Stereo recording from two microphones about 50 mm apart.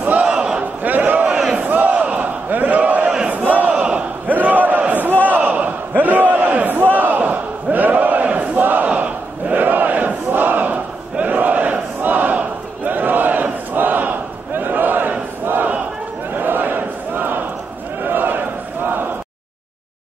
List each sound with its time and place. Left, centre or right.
0.0 s battle cry: right
0.8 s a sound: right
1.6 s battle cry: right
2.0 s battle cry: right
3.7 s battle cry: right
4.3 s battle cry: right
16.3 s a sound: right